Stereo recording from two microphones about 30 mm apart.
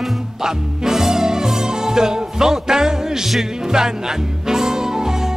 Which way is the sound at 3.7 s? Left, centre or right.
Centre.